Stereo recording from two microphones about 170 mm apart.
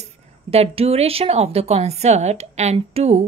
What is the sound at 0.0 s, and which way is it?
Speech, 35° right (ahead or behind).